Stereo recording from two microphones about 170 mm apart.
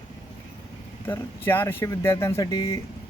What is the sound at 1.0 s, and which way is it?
Speech, 15° left (ahead or behind).